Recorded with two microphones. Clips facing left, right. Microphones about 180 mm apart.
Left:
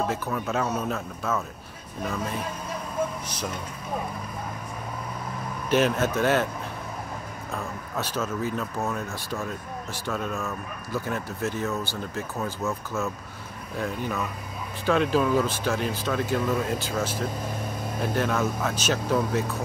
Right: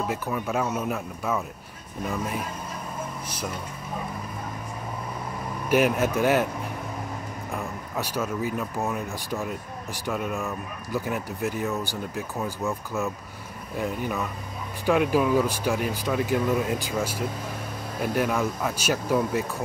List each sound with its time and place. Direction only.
0.3 s speech: 5° right (ahead or behind)
5.7 s speech: 10° right (ahead or behind)
7.5 s speech: 15° right (ahead or behind)